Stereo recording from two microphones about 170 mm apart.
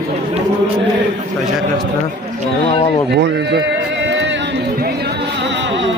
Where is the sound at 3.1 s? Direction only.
85° right.